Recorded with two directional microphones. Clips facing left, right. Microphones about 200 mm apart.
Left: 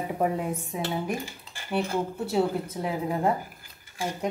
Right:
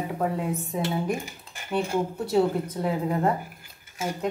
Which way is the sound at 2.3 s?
10° left (ahead or behind).